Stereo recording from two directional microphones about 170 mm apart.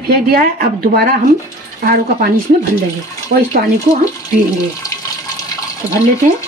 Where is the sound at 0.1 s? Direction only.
60° right (ahead or behind).